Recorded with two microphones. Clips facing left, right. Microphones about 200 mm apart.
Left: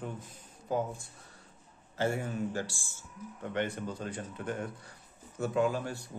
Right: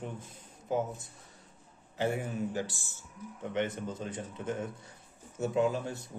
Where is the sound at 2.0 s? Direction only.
20° right (ahead or behind).